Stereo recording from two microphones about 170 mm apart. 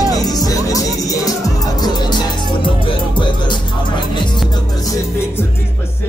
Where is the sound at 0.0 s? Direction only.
20° left (ahead or behind).